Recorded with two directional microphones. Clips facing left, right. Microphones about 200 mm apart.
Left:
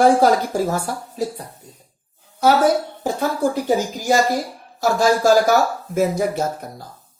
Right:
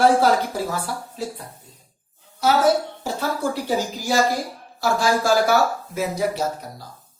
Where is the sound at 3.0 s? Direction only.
50° left (ahead or behind).